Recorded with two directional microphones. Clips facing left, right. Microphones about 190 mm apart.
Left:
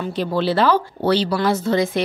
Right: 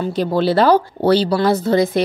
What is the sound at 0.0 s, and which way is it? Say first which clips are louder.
Speech: right 4 dB; 40° right (ahead or behind).